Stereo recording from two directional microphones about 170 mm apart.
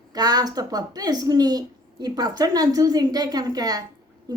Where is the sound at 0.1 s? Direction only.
20° right (ahead or behind).